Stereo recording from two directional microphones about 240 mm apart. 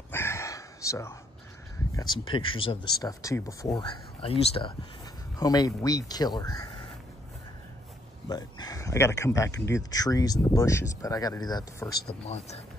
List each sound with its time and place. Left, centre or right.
0.1 s a sound: centre
2.0 s speech: centre
8.3 s speech: centre